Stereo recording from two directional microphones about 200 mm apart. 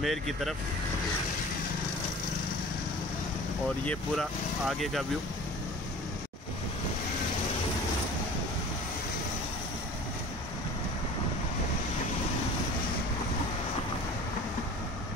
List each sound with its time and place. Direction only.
0.0 s speech: centre (ahead or behind)
3.6 s speech: 5° left (ahead or behind)